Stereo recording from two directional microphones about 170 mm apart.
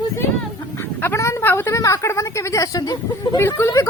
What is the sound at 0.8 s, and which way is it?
Speech, 15° left (ahead or behind).